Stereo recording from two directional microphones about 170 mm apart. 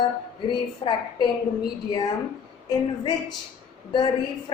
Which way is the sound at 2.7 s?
25° left (ahead or behind).